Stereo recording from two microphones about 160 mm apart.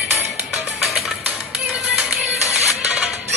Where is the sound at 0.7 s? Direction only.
5° right (ahead or behind).